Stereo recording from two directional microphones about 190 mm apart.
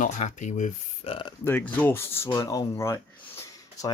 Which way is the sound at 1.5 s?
10° left (ahead or behind).